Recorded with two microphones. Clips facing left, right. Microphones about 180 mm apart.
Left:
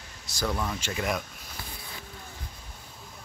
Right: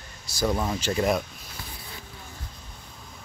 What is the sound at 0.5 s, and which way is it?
Speech, 30° right (ahead or behind).